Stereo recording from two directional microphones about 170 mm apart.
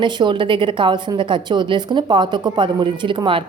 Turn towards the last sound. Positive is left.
turn(degrees=-30)  # may be behind; listen again after turning